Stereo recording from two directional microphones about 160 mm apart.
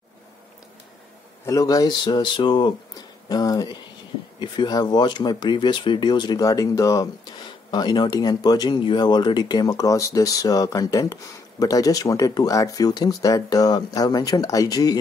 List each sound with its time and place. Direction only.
1.4 s speech: 20° left (ahead or behind)